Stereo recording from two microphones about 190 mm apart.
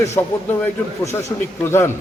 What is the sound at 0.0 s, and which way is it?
A man's voice, 10° left (ahead or behind).